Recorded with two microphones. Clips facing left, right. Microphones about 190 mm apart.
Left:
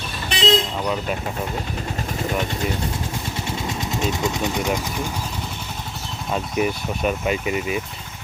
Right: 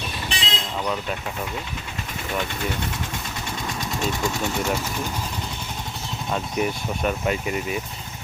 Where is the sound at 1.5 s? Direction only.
40° left (ahead or behind); by 5.1 s 10° left (ahead or behind).